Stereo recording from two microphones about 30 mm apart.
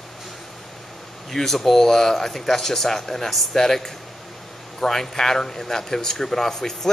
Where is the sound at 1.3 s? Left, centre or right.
Centre.